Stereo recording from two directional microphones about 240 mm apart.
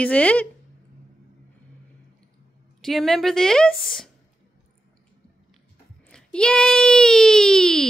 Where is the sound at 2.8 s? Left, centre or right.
Centre.